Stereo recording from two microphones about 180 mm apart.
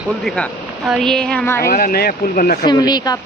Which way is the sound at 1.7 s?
55° left (ahead or behind).